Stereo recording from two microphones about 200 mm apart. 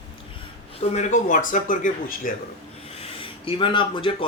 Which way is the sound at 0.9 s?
40° left (ahead or behind).